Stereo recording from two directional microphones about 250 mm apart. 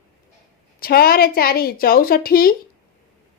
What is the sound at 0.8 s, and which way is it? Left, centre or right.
A woman's voice, left.